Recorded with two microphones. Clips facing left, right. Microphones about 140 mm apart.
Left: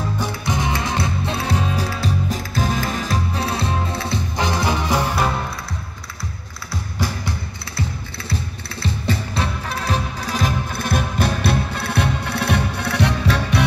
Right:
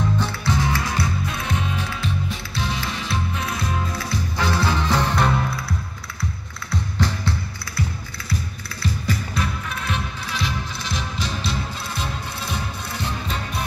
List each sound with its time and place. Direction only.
0.2 s music: 20° left (ahead or behind)
6.7 s music: 10° left (ahead or behind)
8.8 s music: 30° left (ahead or behind); by 13.7 s 75° left (ahead or behind)